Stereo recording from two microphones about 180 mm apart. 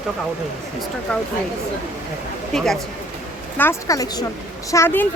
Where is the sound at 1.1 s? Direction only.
5° left (ahead or behind).